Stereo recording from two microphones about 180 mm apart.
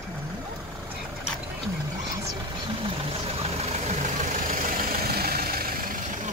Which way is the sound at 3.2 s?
35° right (ahead or behind).